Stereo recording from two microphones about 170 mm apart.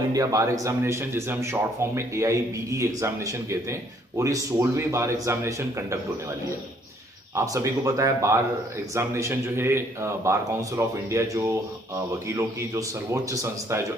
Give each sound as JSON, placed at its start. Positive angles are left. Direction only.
{"t": 0.1, "sound": "speech", "side_deg": -20}
{"t": 7.3, "sound": "speech", "side_deg": -20}